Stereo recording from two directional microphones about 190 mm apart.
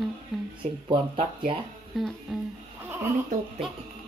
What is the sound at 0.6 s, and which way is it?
Speech, 25° right (ahead or behind).